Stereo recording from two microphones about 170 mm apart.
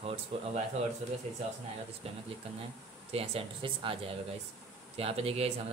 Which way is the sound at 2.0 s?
35° right (ahead or behind).